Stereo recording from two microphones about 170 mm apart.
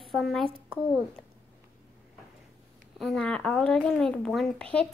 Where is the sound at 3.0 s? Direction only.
5° left (ahead or behind).